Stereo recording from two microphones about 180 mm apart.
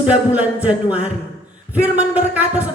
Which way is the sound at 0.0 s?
5° right (ahead or behind).